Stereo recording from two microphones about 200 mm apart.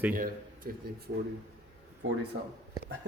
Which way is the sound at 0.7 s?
50° right (ahead or behind).